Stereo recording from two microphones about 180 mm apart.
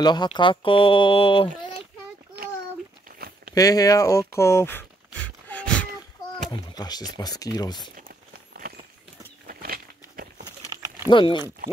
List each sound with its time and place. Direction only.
0.0 s speech: 25° left (ahead or behind)
3.2 s a sound: 55° right (ahead or behind)
3.5 s speech: 20° left (ahead or behind)
6.7 s speech: 20° left (ahead or behind)
9.5 s crumpling: 55° right (ahead or behind)
11.1 s speech: 25° left (ahead or behind)